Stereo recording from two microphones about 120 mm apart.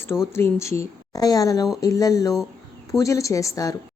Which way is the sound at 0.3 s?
25° left (ahead or behind).